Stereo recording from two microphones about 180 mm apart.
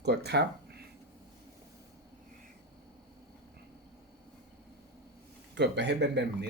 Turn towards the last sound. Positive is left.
turn(degrees=-70)  # may be behind; listen again after turning